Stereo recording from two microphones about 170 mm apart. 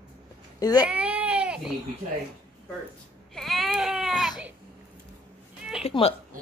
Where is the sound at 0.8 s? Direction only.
5° right (ahead or behind).